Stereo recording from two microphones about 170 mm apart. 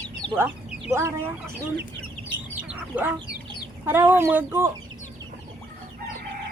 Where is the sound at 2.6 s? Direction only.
10° right (ahead or behind).